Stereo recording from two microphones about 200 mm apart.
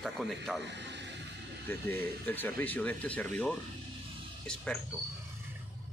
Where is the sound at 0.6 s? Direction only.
60° right (ahead or behind).